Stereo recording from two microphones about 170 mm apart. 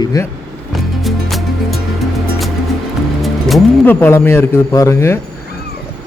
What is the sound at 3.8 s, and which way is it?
A man's voice, 10° left (ahead or behind).